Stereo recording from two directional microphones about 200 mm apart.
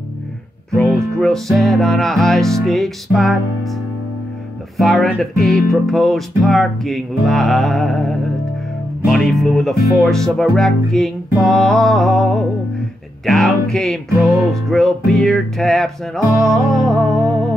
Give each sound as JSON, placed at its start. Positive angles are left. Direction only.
{"t": 1.2, "sound": "music", "side_deg": 0}
{"t": 4.7, "sound": "music", "side_deg": 0}